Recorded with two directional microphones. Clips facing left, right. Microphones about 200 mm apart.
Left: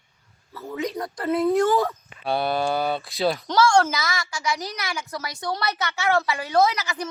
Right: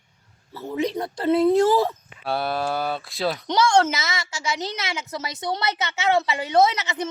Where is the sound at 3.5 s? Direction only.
20° right (ahead or behind).